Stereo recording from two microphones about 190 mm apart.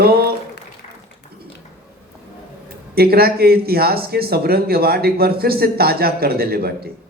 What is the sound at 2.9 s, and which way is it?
Speech, 55° right (ahead or behind).